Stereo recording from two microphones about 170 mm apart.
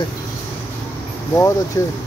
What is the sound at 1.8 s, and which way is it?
Speech, 20° left (ahead or behind).